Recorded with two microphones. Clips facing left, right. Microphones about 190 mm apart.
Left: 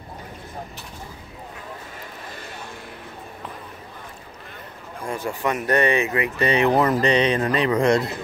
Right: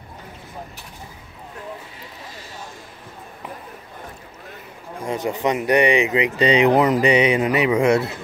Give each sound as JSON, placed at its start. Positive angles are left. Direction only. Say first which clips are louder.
{"t": 5.0, "sound": "speech", "louder": "right 3 dB", "side_deg": -20}